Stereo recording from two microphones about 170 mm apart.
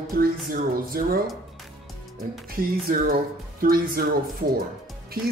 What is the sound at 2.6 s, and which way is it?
Speech, 60° right (ahead or behind).